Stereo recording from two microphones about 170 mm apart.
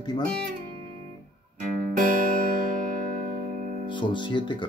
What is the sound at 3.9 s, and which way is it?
Music, 30° left (ahead or behind).